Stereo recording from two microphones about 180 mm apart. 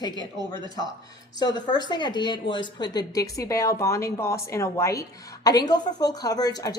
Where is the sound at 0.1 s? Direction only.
25° right (ahead or behind).